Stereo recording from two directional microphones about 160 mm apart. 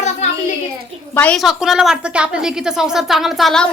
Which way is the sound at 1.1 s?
10° left (ahead or behind).